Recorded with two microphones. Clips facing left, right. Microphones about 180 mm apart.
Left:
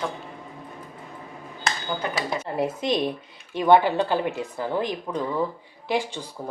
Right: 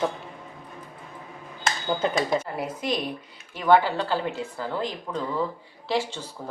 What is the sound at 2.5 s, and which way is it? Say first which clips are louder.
Speech: left 4 dB; 25° left (ahead or behind).